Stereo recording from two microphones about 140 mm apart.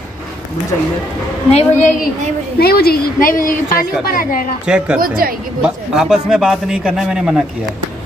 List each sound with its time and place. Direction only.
1.5 s a woman's voice: 50° left (ahead or behind)
2.6 s a woman's voice: 90° left
4.6 s speech: 5° right (ahead or behind)
5.0 s speech: 90° right
5.6 s a man's voice: centre (ahead or behind)